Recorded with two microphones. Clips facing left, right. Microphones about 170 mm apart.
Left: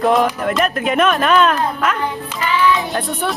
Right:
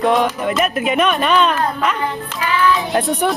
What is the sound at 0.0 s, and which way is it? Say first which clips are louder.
Speech: left 1 dB; centre (ahead or behind).